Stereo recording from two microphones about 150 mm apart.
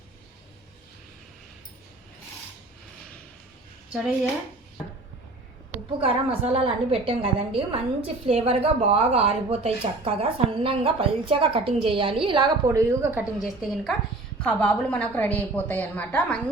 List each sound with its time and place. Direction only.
3.9 s a woman's voice: centre (ahead or behind)
6.0 s a woman's voice: 40° right (ahead or behind)
12.6 s a woman's voice: 20° right (ahead or behind)
13.4 s a woman's voice: centre (ahead or behind)
14.4 s a woman's voice: 10° left (ahead or behind)